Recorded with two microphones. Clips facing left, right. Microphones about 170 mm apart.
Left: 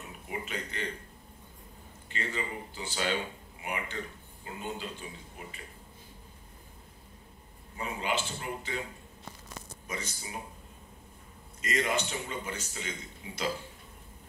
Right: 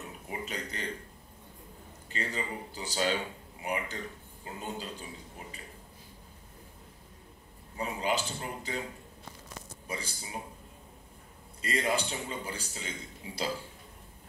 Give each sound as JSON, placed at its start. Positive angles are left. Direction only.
{"t": 0.3, "sound": "a sound", "side_deg": -40}
{"t": 2.0, "sound": "speech", "side_deg": -40}
{"t": 7.7, "sound": "speech", "side_deg": -35}
{"t": 9.8, "sound": "speech", "side_deg": -30}
{"t": 11.6, "sound": "speech", "side_deg": -35}